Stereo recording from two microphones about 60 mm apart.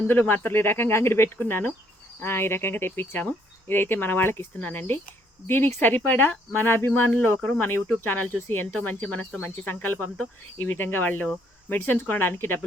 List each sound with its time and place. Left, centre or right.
0.1 s speech: left